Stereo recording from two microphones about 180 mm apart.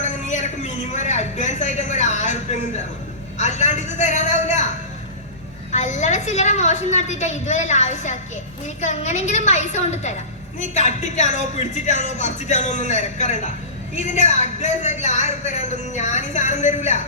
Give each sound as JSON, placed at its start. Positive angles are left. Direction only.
{"t": 0.0, "sound": "a man's voice", "side_deg": 40}
{"t": 3.3, "sound": "a sound", "side_deg": 40}
{"t": 5.7, "sound": "a man's voice", "side_deg": 40}